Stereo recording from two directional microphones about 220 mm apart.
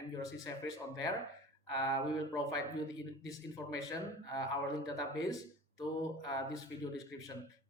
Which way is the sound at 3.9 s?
15° left (ahead or behind).